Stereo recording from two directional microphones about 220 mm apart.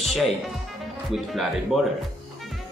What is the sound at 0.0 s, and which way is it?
Music, centre (ahead or behind).